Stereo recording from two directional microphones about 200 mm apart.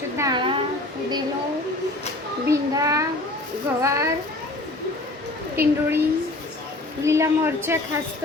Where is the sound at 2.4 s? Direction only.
15° right (ahead or behind).